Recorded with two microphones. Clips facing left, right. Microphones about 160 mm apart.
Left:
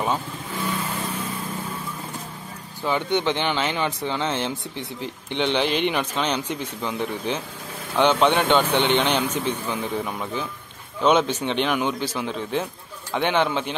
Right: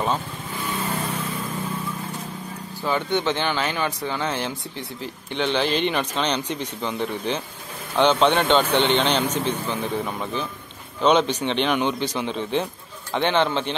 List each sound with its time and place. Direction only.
2.8 s speech: 15° left (ahead or behind)